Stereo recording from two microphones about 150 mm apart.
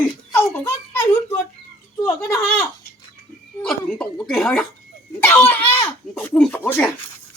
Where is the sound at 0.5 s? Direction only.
15° left (ahead or behind).